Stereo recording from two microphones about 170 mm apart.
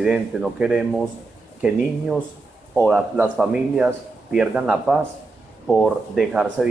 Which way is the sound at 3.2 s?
Centre (ahead or behind).